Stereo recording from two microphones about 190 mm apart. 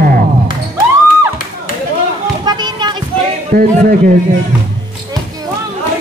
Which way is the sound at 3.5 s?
50° right (ahead or behind).